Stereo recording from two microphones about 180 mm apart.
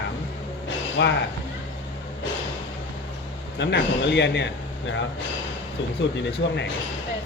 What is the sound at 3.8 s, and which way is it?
Speech, 75° left (ahead or behind).